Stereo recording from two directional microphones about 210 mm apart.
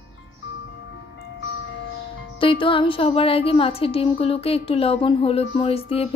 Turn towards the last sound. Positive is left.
turn(degrees=30)  # may be behind; listen again after turning